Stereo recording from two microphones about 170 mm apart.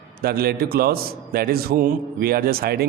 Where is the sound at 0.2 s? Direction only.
65° right (ahead or behind).